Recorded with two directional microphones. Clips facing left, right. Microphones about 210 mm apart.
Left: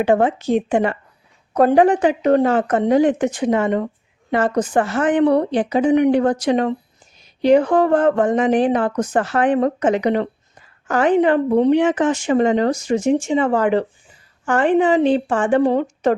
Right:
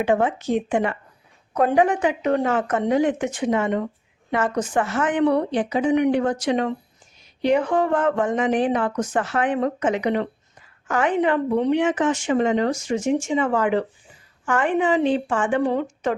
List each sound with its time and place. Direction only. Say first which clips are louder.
0.0 s speech: left 4 dB; 35° left (ahead or behind)